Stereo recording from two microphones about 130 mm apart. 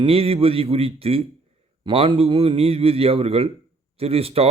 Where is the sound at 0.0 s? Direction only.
50° right (ahead or behind).